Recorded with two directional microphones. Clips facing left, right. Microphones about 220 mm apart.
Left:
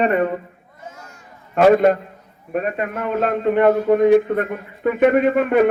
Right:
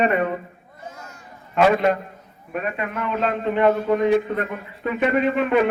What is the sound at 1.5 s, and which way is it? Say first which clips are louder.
A man's voice: left 5 dB; 45° left (ahead or behind).